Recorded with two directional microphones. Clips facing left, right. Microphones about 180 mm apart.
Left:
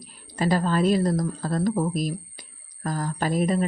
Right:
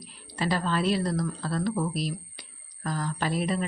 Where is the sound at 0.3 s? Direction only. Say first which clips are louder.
Left 5 dB; 45° left (ahead or behind).